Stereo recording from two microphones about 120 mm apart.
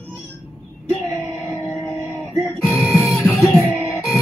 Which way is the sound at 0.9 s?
20° left (ahead or behind).